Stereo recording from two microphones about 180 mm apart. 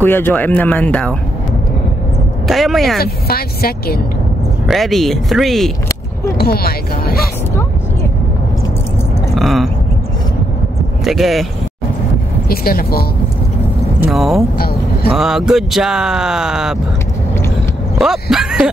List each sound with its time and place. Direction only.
0.0 s speech: 10° left (ahead or behind)
2.4 s speech: centre (ahead or behind)
3.0 s speech: 55° left (ahead or behind)
4.6 s speech: centre (ahead or behind)
6.3 s speech: 60° left (ahead or behind)
9.3 s a sound: centre (ahead or behind)
11.1 s speech: centre (ahead or behind)
12.4 s speech: 55° left (ahead or behind)
14.1 s speech: centre (ahead or behind)
17.9 s speech: centre (ahead or behind)